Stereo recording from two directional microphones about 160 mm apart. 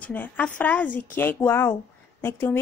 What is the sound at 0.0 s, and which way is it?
A woman's voice, 10° left (ahead or behind).